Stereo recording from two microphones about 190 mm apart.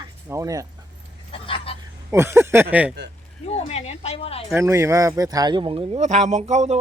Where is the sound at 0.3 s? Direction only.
15° right (ahead or behind).